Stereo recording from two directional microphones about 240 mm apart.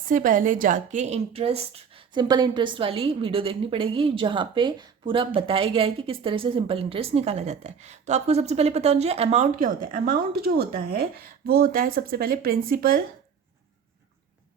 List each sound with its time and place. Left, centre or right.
0.1 s a woman's voice: right